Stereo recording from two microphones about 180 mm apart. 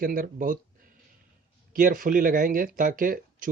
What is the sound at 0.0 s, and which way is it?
Speech, 50° right (ahead or behind).